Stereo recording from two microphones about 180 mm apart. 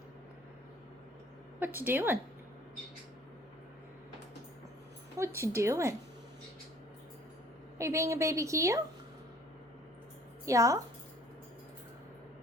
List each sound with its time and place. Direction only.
1.5 s a woman's voice: 10° right (ahead or behind)
5.1 s a woman's voice: 15° right (ahead or behind)
7.8 s a woman's voice: 15° right (ahead or behind)
10.4 s a woman's voice: 15° right (ahead or behind)